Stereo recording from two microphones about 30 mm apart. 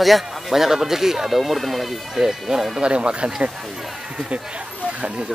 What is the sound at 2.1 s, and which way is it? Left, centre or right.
Speech, centre.